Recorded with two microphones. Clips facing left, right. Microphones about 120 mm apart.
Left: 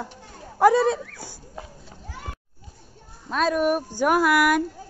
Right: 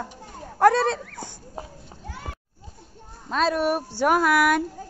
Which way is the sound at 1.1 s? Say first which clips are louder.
Right 3 dB; 25° right (ahead or behind).